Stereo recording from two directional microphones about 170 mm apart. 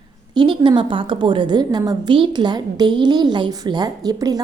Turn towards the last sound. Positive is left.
turn(degrees=-20)  # may be behind; listen again after turning